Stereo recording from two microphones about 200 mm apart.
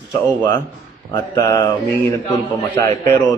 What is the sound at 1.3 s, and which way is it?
Speech, 15° left (ahead or behind).